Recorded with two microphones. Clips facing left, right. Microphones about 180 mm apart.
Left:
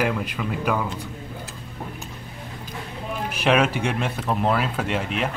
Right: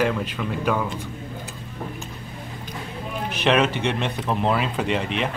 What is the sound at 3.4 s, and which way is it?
Speech, 10° left (ahead or behind).